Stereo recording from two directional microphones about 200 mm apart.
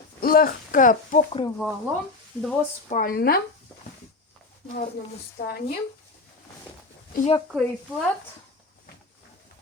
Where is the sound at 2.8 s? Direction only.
40° left (ahead or behind).